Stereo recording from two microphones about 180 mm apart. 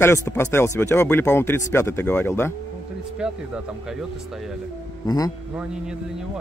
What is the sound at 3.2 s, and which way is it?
Speech, 5° right (ahead or behind).